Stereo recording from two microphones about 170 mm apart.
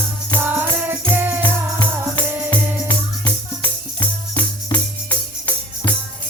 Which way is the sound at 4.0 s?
25° left (ahead or behind).